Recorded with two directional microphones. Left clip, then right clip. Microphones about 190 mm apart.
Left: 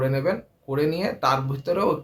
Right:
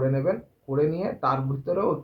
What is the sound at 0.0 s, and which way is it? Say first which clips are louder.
Speech: left 1 dB; 15° left (ahead or behind).